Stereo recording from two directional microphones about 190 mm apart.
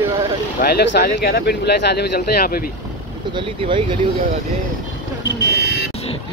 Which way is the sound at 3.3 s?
25° right (ahead or behind).